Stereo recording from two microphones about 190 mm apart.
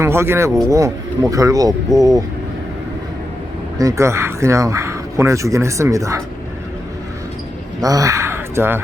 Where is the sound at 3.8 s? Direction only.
15° right (ahead or behind).